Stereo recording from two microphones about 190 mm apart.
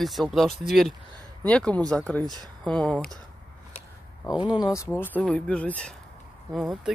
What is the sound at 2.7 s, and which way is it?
Speech, 5° left (ahead or behind).